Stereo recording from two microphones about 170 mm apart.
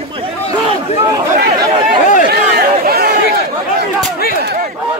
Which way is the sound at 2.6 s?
65° right (ahead or behind).